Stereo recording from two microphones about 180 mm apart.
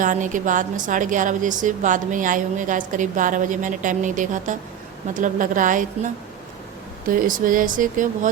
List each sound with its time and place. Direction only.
0.0 s a woman's voice: 45° right (ahead or behind)